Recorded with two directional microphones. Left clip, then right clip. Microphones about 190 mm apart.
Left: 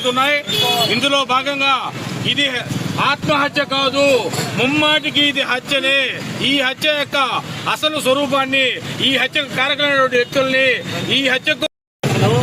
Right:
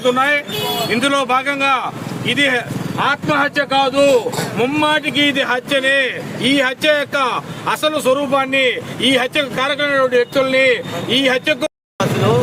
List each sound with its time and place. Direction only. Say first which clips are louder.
0.0 s a man's voice: right 1 dB; 10° right (ahead or behind)